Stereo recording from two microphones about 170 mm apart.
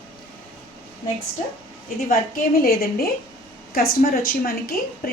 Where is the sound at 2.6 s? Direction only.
65° left (ahead or behind).